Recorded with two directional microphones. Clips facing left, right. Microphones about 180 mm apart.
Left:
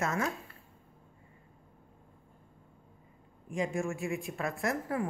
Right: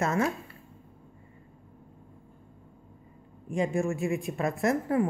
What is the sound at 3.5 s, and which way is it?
A woman's voice, 30° right (ahead or behind).